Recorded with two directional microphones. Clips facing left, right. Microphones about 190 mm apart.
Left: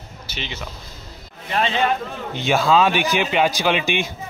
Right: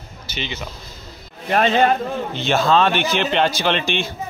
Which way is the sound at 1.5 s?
45° right (ahead or behind).